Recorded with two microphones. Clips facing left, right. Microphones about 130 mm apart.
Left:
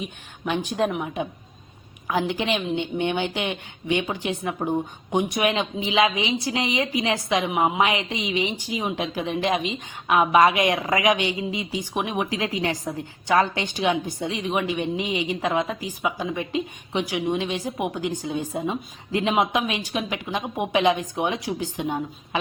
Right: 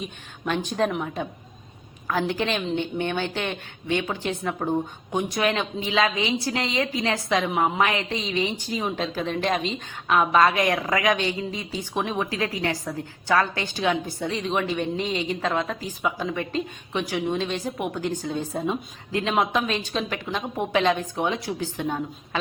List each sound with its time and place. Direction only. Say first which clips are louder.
0.4 s a woman's voice: even; 15° left (ahead or behind)
2.0 s a woman's voice: left 1 dB; 15° left (ahead or behind)